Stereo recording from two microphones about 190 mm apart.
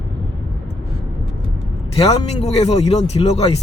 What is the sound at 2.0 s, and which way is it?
Speech, 35° left (ahead or behind).